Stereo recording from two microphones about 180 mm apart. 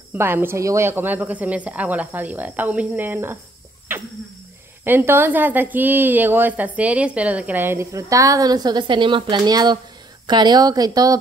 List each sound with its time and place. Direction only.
0.1 s a woman's voice: 10° right (ahead or behind)
4.8 s a woman's voice: 10° right (ahead or behind)